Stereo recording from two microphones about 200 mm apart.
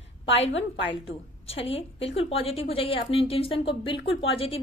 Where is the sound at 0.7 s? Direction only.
65° left (ahead or behind).